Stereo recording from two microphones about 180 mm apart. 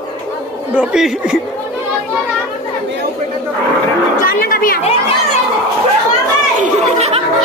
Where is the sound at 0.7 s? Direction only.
5° right (ahead or behind).